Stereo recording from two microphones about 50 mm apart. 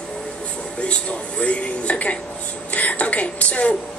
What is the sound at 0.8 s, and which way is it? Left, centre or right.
A woman's voice, left.